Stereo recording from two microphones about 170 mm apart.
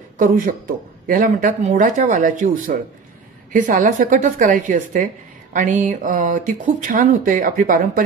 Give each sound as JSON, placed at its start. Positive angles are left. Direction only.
{"t": 0.2, "sound": "a woman's voice", "side_deg": -55}